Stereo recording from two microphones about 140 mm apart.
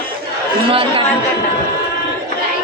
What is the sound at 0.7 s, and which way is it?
Chatter, 40° right (ahead or behind).